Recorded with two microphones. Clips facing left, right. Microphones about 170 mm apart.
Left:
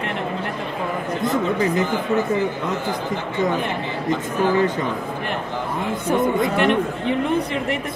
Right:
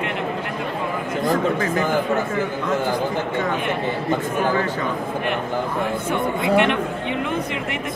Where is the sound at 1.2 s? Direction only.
20° left (ahead or behind).